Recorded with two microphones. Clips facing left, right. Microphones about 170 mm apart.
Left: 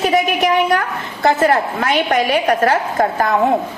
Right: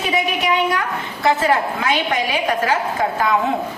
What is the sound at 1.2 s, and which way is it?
A woman's voice, 45° left (ahead or behind).